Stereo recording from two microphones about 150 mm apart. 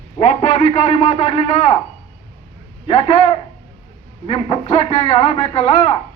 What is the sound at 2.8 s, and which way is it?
A man's voice, 40° left (ahead or behind).